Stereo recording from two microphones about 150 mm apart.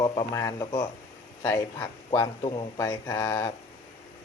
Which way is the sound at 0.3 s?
20° left (ahead or behind).